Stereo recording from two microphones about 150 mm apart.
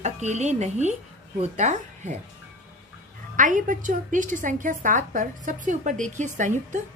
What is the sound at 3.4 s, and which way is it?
A woman's voice, 60° right (ahead or behind).